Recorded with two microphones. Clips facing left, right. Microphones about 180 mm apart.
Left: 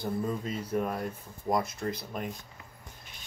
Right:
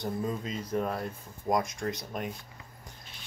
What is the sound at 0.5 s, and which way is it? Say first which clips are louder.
Speech: even; 10° left (ahead or behind).